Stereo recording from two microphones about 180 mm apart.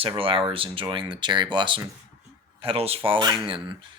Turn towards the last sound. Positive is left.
turn(degrees=-25)  # may be behind; listen again after turning